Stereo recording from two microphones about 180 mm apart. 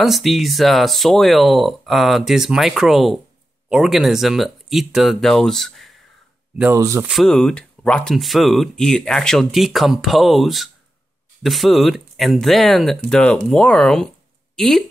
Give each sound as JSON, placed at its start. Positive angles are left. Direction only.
{"t": 0.0, "sound": "speech", "side_deg": 0}
{"t": 6.6, "sound": "speech", "side_deg": -15}
{"t": 7.1, "sound": "speech", "side_deg": 0}